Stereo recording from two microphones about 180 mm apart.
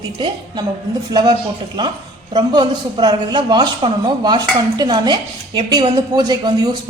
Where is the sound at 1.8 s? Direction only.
25° right (ahead or behind).